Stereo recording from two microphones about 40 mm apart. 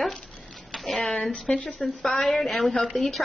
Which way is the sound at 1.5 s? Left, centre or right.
Centre.